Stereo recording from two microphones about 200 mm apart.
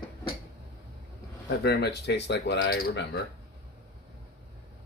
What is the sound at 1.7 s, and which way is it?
Speech, 55° left (ahead or behind).